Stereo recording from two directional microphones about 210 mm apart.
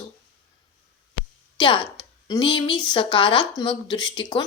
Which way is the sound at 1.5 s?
25° left (ahead or behind).